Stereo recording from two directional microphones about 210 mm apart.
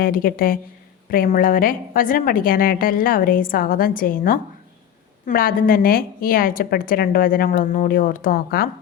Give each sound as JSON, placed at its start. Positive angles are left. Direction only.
{"t": 0.0, "sound": "a woman's voice", "side_deg": 45}